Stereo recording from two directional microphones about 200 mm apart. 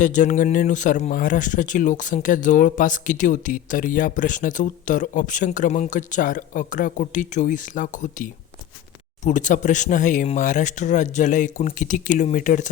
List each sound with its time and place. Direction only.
0.0 s speech: 40° left (ahead or behind)